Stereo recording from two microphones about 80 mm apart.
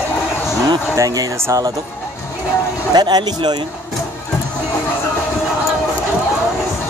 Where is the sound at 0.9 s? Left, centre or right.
Right.